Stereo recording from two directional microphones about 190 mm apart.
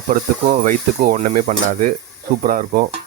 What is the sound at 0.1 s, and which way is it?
Speech, 45° right (ahead or behind).